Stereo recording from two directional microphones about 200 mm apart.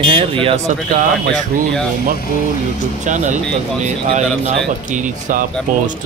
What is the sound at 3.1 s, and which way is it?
Speech, 40° right (ahead or behind).